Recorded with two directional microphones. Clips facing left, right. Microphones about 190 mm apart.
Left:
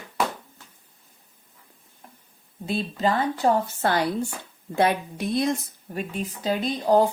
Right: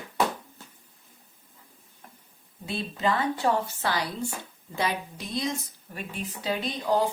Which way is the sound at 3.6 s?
55° left (ahead or behind).